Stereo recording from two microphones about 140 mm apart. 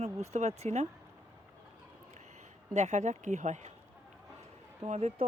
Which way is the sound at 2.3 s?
60° right (ahead or behind).